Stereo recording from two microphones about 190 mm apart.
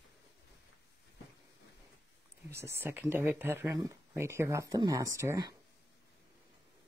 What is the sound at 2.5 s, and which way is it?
Speech, 15° right (ahead or behind).